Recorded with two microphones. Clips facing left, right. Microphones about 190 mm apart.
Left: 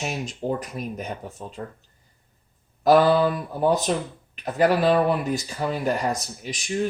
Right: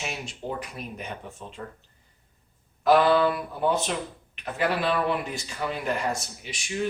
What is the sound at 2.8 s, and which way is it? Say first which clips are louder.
Speech: left 3 dB; 40° left (ahead or behind).